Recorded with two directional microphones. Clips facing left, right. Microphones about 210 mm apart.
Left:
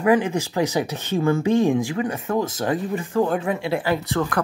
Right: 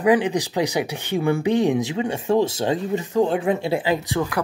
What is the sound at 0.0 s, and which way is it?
Speech, 15° right (ahead or behind).